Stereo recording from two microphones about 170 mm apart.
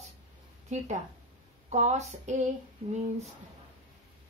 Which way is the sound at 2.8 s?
35° right (ahead or behind).